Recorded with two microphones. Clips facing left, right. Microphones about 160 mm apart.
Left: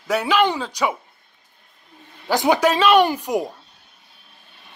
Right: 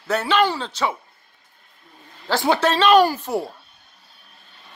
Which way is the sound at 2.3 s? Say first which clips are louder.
Left 2 dB; 15° left (ahead or behind).